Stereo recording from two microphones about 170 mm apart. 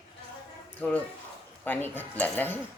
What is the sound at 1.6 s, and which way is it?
Speech, 10° left (ahead or behind).